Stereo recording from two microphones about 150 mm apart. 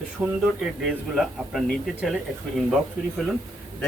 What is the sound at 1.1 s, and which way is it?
Speech, centre (ahead or behind).